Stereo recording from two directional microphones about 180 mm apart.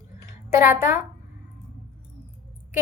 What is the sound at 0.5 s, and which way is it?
Speech, 15° right (ahead or behind).